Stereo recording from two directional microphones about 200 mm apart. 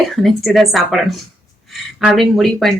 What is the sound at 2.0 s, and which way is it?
Speech, centre (ahead or behind).